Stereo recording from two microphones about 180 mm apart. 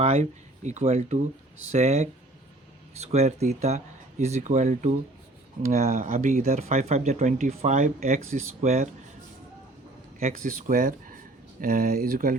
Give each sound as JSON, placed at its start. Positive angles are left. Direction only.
{"t": 0.0, "sound": "speech", "side_deg": -40}
{"t": 10.2, "sound": "speech", "side_deg": -50}